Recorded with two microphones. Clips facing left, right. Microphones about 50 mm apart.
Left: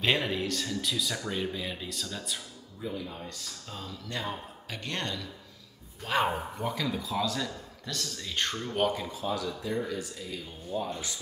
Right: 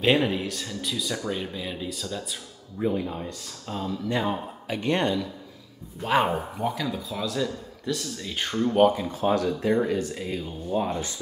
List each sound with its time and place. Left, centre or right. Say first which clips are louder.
0.0 s speech: right 6 dB; centre
2.8 s speech: right 10 dB; right
4.6 s speech: right 11 dB; centre
6.6 s speech: right 4 dB; centre
9.1 s speech: right 9 dB; right